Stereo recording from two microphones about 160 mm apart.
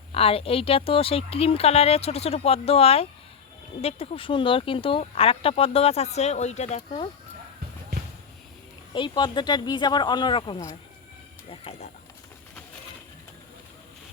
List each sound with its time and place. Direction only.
0.1 s speech: 35° left (ahead or behind)
8.9 s speech: 30° left (ahead or behind)